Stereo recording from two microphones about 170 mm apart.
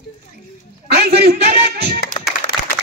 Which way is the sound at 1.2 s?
65° right (ahead or behind).